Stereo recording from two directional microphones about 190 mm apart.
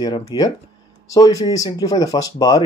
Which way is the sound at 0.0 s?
20° left (ahead or behind).